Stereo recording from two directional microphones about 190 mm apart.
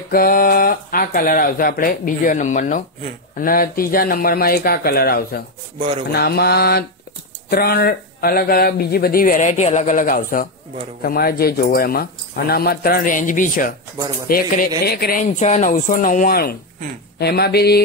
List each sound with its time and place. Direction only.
0.1 s speech: 50° left (ahead or behind)
5.8 s speech: 30° right (ahead or behind)
6.1 s mantra: 55° left (ahead or behind)
7.4 s speech: 55° left (ahead or behind)
17.2 s mantra: 60° left (ahead or behind)